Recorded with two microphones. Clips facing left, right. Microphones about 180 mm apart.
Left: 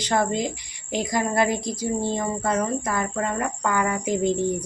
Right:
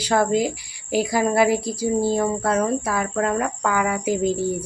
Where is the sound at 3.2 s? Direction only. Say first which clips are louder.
Right 4 dB; 90° right.